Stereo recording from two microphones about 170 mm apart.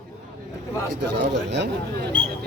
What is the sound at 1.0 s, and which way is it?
Speech, 90° right.